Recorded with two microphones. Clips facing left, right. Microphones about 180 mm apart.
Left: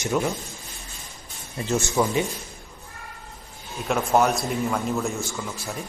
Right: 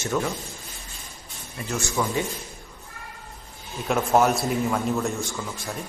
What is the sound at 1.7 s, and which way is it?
Speech, 20° left (ahead or behind).